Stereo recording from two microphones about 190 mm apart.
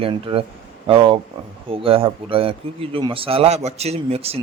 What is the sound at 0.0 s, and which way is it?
A man's voice, 25° right (ahead or behind).